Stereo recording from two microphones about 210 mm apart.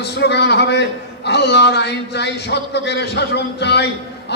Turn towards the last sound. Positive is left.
turn(degrees=55)  # may be behind; listen again after turning